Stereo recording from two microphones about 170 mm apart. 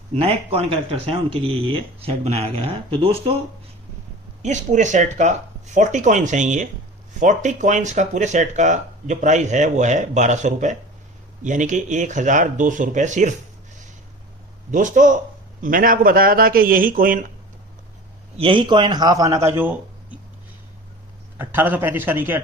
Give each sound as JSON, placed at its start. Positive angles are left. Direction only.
{"t": 0.2, "sound": "speech", "side_deg": -35}
{"t": 4.4, "sound": "speech", "side_deg": -45}
{"t": 14.7, "sound": "speech", "side_deg": -50}
{"t": 18.3, "sound": "a man's voice", "side_deg": -30}
{"t": 21.3, "sound": "a man's voice", "side_deg": -10}